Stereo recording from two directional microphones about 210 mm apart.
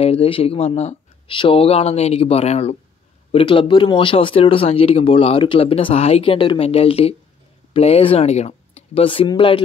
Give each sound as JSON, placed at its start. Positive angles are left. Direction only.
{"t": 0.0, "sound": "speech", "side_deg": 25}